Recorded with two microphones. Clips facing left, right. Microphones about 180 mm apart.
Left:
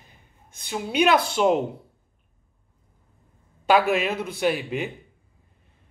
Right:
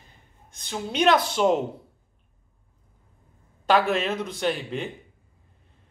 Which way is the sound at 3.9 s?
10° left (ahead or behind).